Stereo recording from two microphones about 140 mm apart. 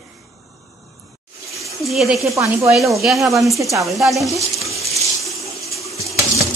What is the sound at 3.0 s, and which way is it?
A woman's voice, centre (ahead or behind).